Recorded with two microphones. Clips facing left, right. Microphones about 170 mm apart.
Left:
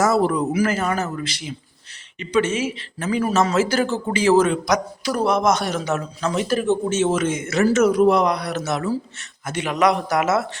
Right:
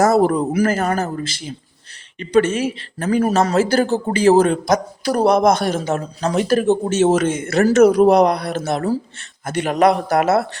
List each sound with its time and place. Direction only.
0.0 s a man's voice: 45° right (ahead or behind)
2.6 s a man's voice: 40° right (ahead or behind)
6.3 s speech: 45° right (ahead or behind)